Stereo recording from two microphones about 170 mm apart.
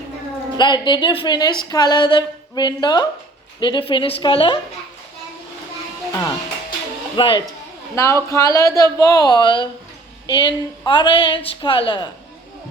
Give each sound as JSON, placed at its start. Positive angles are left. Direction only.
{"t": 0.5, "sound": "a woman's voice", "side_deg": 25}
{"t": 7.2, "sound": "a woman's voice", "side_deg": 30}
{"t": 7.9, "sound": "a woman's voice", "side_deg": 15}